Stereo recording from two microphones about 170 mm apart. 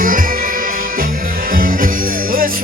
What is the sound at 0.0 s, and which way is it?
Music, 55° right (ahead or behind).